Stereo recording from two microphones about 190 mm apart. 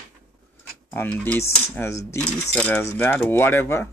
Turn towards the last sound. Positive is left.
turn(degrees=10)  # may be behind; listen again after turning